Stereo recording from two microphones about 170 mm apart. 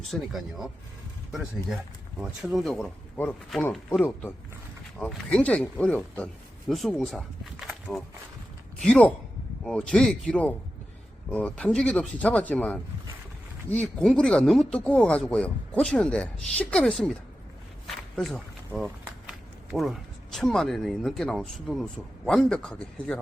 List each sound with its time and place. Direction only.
0.1 s speech: centre (ahead or behind)
2.4 s speech: centre (ahead or behind)
3.2 s speech: 10° left (ahead or behind)
7.5 s a sound: centre (ahead or behind)
8.8 s speech: 5° left (ahead or behind)
17.8 s a sound: centre (ahead or behind)
19.3 s speech: centre (ahead or behind)